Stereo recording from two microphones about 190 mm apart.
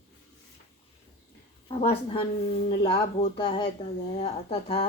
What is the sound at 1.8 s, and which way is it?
Speech, 30° left (ahead or behind).